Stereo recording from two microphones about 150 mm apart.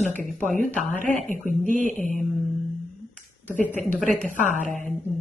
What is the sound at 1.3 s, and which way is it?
Speech, 60° right (ahead or behind).